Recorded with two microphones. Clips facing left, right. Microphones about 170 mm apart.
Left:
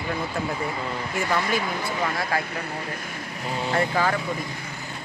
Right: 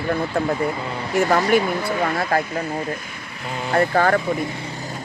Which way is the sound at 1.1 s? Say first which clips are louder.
Right 9 dB; 50° right (ahead or behind).